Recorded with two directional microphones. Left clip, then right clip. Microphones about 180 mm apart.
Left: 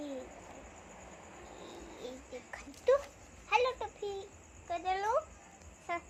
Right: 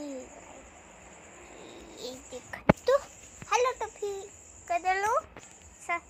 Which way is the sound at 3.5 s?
40° right (ahead or behind).